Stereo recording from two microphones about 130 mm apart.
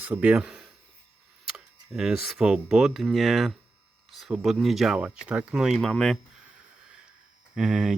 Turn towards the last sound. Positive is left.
turn(degrees=-5)  # may be behind; listen again after turning